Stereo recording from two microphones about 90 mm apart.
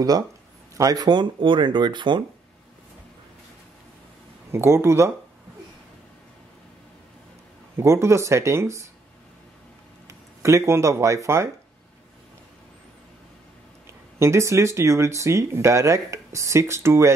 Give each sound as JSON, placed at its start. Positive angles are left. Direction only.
{"t": 0.7, "sound": "speech", "side_deg": -45}
{"t": 4.5, "sound": "speech", "side_deg": -30}
{"t": 7.7, "sound": "speech", "side_deg": -30}
{"t": 10.0, "sound": "speech", "side_deg": -35}
{"t": 14.1, "sound": "speech", "side_deg": -30}